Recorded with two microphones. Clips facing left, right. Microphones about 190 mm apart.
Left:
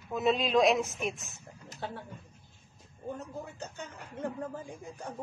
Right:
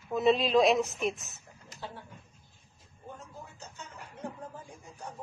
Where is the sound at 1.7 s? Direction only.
60° left (ahead or behind).